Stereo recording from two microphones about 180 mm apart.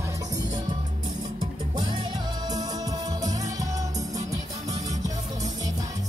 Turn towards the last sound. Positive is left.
turn(degrees=-20)  # may be behind; listen again after turning